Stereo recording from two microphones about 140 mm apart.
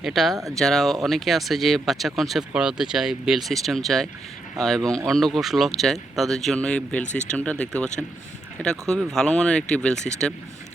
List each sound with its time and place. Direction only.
0.0 s speech: centre (ahead or behind)
7.0 s speech: 60° left (ahead or behind)
7.3 s speech: 10° left (ahead or behind)